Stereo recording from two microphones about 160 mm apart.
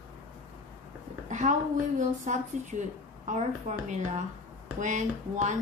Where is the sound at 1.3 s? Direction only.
50° right (ahead or behind).